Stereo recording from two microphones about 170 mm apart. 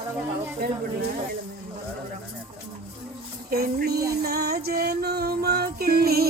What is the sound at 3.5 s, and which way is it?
Music, 65° right (ahead or behind).